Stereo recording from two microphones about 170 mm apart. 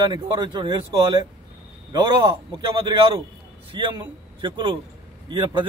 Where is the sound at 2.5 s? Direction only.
30° right (ahead or behind).